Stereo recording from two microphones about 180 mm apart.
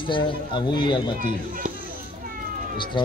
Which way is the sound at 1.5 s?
50° right (ahead or behind).